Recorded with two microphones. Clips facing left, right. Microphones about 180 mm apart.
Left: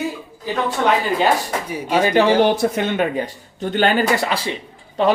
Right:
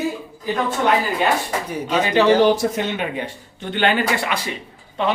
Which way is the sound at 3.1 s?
40° left (ahead or behind).